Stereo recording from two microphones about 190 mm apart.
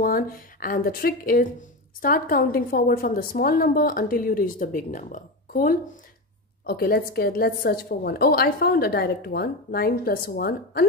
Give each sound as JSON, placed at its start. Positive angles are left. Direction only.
{"t": 0.0, "sound": "a woman's voice", "side_deg": 50}